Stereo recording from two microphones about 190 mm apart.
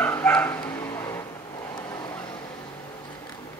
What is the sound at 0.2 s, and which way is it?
Dog, 10° left (ahead or behind).